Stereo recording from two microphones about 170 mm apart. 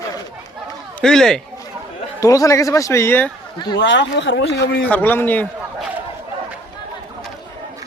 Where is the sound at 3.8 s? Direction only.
90° left.